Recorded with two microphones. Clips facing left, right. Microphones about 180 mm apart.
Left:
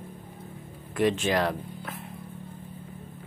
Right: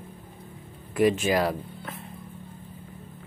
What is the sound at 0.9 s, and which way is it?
Speech, 10° right (ahead or behind).